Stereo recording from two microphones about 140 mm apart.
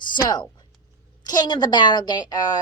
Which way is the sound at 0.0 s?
30° left (ahead or behind).